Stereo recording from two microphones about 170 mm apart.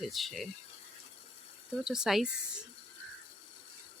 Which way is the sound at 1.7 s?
5° right (ahead or behind).